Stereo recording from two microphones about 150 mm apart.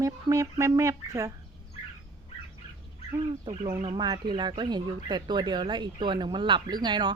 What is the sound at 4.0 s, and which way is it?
Mantra, 30° right (ahead or behind).